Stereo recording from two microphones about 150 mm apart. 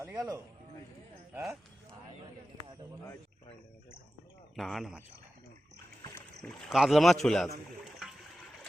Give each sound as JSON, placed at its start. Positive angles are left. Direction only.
{"t": 0.0, "sound": "speech", "side_deg": -25}
{"t": 1.3, "sound": "speech", "side_deg": 0}
{"t": 4.5, "sound": "speech", "side_deg": 0}
{"t": 6.4, "sound": "speech", "side_deg": 5}